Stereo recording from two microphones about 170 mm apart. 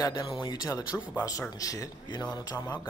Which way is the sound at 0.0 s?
25° left (ahead or behind).